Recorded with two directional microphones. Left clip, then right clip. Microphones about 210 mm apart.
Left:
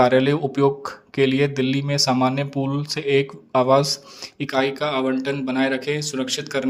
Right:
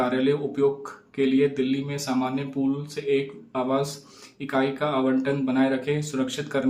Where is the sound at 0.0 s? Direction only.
45° left (ahead or behind).